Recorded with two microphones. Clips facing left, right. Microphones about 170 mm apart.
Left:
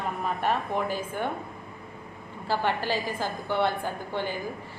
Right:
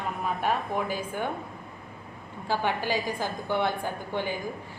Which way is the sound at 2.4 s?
10° right (ahead or behind).